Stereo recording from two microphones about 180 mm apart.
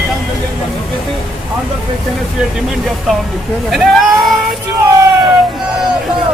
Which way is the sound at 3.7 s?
Centre (ahead or behind).